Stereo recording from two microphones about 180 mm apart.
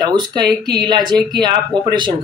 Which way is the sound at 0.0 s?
25° right (ahead or behind).